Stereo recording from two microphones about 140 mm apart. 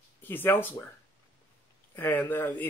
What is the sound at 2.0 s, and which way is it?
Speech, 15° left (ahead or behind).